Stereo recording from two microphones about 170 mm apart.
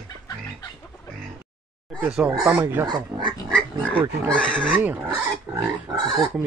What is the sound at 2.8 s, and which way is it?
Pig, 25° right (ahead or behind).